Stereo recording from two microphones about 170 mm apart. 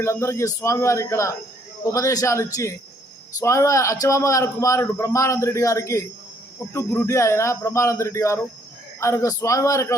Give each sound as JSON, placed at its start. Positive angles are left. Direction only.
{"t": 0.0, "sound": "a man's voice", "side_deg": 15}